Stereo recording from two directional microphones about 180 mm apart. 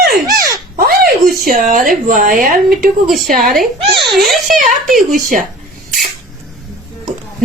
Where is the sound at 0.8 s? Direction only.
55° right (ahead or behind).